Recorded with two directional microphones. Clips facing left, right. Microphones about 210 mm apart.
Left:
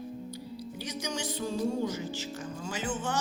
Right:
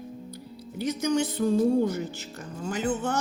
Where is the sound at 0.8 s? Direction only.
55° right (ahead or behind).